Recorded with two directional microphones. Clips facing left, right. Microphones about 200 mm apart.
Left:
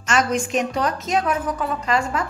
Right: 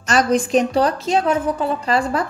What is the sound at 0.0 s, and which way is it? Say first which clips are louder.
A woman's voice: right 4 dB; 35° right (ahead or behind).